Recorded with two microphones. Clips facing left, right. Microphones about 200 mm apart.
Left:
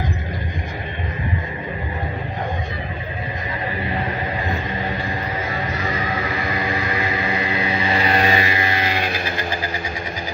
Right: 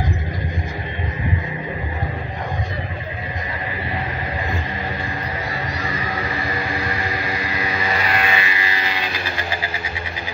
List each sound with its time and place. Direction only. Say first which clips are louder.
8.0 s music: left 4 dB; 35° left (ahead or behind); by 9.2 s 50° left (ahead or behind)